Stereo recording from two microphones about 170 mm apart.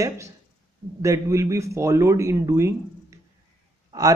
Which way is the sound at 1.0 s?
20° right (ahead or behind).